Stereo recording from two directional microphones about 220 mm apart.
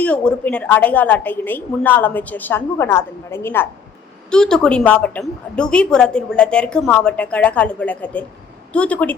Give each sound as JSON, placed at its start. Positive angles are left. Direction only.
{"t": 0.0, "sound": "a woman's voice", "side_deg": 5}